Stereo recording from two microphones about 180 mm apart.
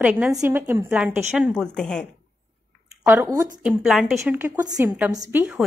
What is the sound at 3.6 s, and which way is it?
A woman's voice, 5° right (ahead or behind).